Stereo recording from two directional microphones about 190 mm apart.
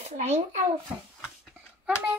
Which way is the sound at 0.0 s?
35° right (ahead or behind).